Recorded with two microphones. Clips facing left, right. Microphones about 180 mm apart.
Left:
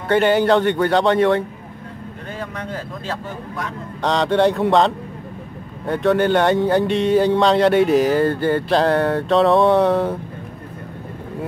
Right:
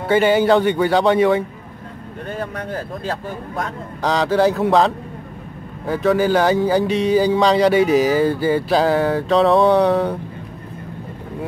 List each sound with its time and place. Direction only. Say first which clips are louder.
0.1 s speech: right 1 dB; centre (ahead or behind)
2.3 s speech: right 3 dB; 50° right (ahead or behind)
4.0 s speech: even; centre (ahead or behind)